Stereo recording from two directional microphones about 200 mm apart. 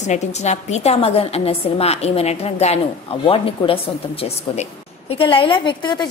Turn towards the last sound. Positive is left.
turn(degrees=20)  # may be behind; listen again after turning